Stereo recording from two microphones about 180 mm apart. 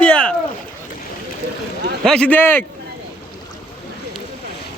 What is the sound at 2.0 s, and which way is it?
Speech, 5° left (ahead or behind).